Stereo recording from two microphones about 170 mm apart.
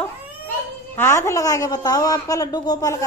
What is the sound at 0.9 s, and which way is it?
A woman's voice, 15° left (ahead or behind).